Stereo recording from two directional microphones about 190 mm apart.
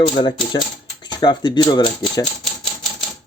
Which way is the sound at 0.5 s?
20° left (ahead or behind).